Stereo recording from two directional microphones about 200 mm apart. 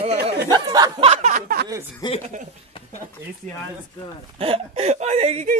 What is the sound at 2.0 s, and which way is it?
Speech, 20° left (ahead or behind).